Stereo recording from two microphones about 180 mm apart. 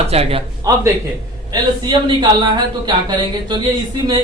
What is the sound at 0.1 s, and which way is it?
Speech, 35° right (ahead or behind).